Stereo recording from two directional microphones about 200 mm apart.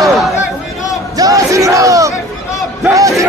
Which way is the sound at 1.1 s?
15° right (ahead or behind).